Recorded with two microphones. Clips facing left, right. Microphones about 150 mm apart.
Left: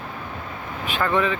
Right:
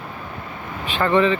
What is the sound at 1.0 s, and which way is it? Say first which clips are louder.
Speech: right 5 dB; 5° left (ahead or behind).